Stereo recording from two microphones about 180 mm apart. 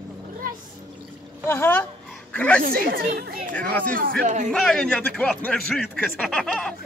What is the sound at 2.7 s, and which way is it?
Speech, 60° right (ahead or behind).